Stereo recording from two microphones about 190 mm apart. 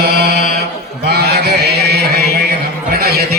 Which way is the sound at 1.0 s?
60° right (ahead or behind).